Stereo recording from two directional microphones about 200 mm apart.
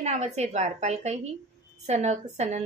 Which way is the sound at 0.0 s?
35° right (ahead or behind).